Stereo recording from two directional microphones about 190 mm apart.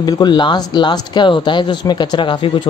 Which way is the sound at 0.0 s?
20° left (ahead or behind).